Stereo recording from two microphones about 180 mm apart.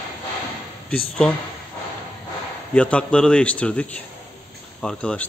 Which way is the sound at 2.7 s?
5° left (ahead or behind).